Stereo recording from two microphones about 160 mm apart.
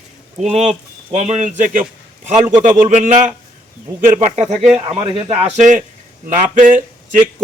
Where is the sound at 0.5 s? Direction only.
45° right (ahead or behind).